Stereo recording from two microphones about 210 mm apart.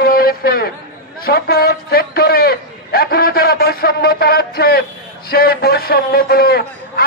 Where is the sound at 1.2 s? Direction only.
45° left (ahead or behind).